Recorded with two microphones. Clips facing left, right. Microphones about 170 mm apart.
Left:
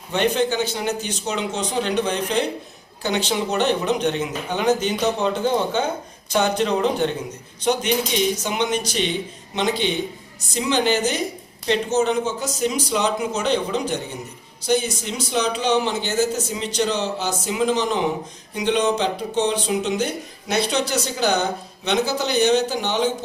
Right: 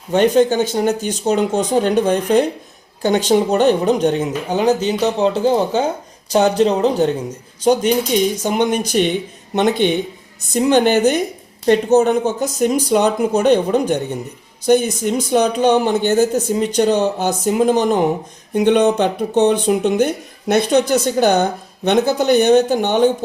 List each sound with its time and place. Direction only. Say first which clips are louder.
0.1 s a woman's voice: right 7 dB; 45° right (ahead or behind)